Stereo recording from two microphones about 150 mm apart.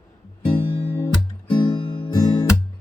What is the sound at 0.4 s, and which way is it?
Guitar, 30° left (ahead or behind).